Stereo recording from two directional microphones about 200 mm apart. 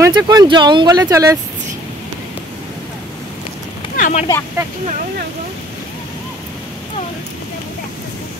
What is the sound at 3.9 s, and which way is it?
Vehicle, 40° left (ahead or behind).